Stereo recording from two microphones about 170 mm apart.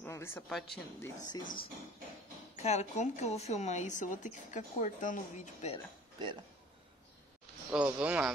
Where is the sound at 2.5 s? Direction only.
40° left (ahead or behind).